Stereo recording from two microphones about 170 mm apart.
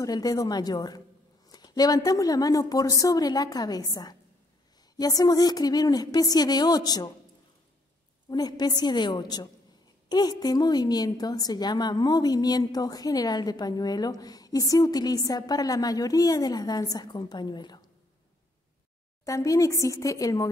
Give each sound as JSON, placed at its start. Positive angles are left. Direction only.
{"t": 0.0, "sound": "a woman's voice", "side_deg": 20}
{"t": 8.3, "sound": "a woman's voice", "side_deg": 25}
{"t": 19.2, "sound": "a woman's voice", "side_deg": 20}